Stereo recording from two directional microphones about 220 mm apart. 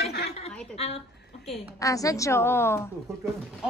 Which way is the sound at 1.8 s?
15° left (ahead or behind).